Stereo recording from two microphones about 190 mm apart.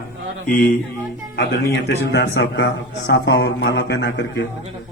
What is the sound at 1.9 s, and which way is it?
A man's voice, 65° left (ahead or behind).